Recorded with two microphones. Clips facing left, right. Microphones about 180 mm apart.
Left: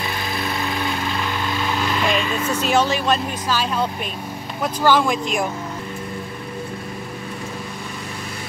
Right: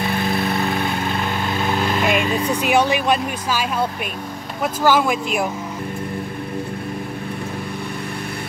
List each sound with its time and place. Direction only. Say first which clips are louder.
0.0 s lawn mower: right 5 dB; 55° right (ahead or behind)
2.3 s speech: right 2 dB; 15° right (ahead or behind)
4.8 s speech: even; 5° right (ahead or behind)